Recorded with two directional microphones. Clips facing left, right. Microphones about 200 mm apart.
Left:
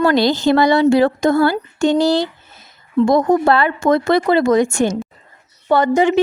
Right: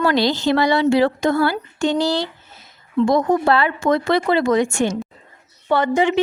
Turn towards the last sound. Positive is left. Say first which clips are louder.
# left 3 dB
turn(degrees=45)  # may be behind; listen again after turning